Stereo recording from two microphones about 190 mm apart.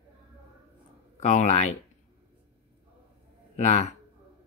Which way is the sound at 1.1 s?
35° left (ahead or behind).